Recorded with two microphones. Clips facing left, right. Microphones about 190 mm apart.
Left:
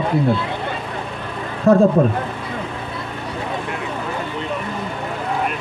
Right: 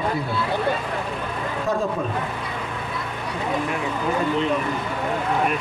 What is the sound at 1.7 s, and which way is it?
Speech, 60° left (ahead or behind).